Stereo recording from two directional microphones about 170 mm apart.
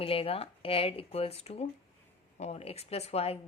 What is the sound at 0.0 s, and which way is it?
A woman's voice, 35° left (ahead or behind).